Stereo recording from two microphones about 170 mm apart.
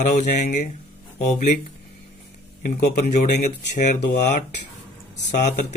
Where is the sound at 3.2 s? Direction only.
45° left (ahead or behind).